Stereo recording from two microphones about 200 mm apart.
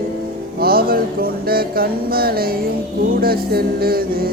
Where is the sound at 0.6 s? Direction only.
50° right (ahead or behind).